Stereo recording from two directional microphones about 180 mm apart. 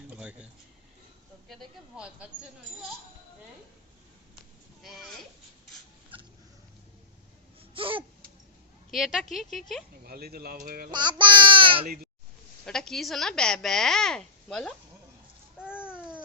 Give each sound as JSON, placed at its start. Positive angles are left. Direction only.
{"t": 0.1, "sound": "a sound", "side_deg": -5}
{"t": 1.5, "sound": "speech", "side_deg": 0}
{"t": 4.8, "sound": "speech", "side_deg": 0}
{"t": 6.1, "sound": "a sound", "side_deg": -30}
{"t": 7.7, "sound": "a sound", "side_deg": -30}
{"t": 8.9, "sound": "speech", "side_deg": 0}
{"t": 10.0, "sound": "speech", "side_deg": -60}
{"t": 10.9, "sound": "speech", "side_deg": -25}
{"t": 12.6, "sound": "speech", "side_deg": 0}
{"t": 15.5, "sound": "babbling", "side_deg": -5}
{"t": 15.9, "sound": "baby cry", "side_deg": -5}